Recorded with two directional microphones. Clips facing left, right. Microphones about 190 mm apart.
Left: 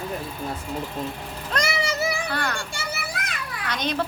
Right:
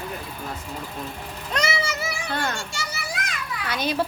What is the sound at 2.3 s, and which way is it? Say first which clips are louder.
Children playing: right 1 dB; 20° right (ahead or behind).